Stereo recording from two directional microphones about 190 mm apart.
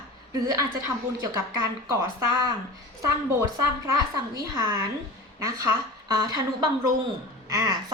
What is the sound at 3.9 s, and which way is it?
A woman's voice, 20° right (ahead or behind).